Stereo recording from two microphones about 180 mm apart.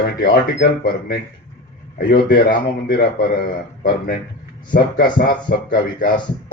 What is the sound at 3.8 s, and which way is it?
Speech, 55° left (ahead or behind).